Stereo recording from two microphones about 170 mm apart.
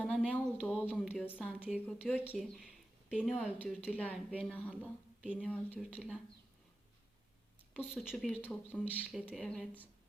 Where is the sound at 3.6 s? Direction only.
10° left (ahead or behind).